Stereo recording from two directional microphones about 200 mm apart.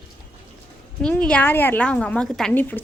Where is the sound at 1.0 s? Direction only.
5° left (ahead or behind).